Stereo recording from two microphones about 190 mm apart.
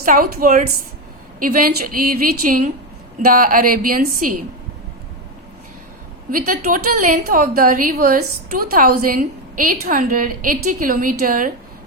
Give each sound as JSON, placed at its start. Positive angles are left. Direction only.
{"t": 0.0, "sound": "a woman's voice", "side_deg": -45}
{"t": 6.3, "sound": "a woman's voice", "side_deg": -45}